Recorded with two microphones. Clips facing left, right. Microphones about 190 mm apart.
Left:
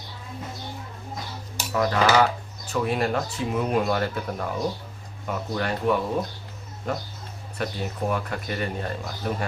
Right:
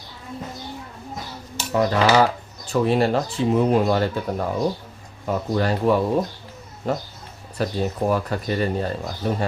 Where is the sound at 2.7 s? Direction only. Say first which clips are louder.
Right 5 dB; 30° right (ahead or behind).